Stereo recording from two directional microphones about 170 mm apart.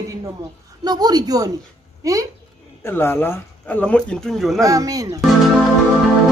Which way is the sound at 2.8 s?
15° left (ahead or behind).